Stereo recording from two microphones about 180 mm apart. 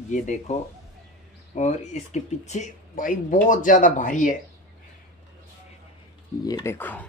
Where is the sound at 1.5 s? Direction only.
40° left (ahead or behind).